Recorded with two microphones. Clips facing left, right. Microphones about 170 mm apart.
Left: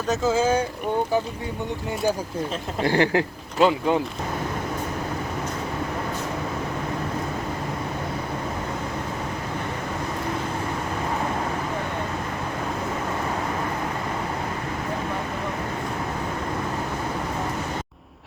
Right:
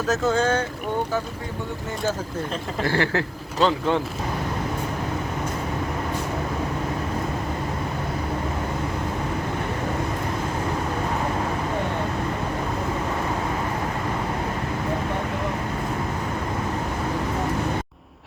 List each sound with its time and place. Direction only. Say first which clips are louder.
0.1 s speech: left 1 dB; centre (ahead or behind)
2.8 s speech: left 3 dB; 20° left (ahead or behind)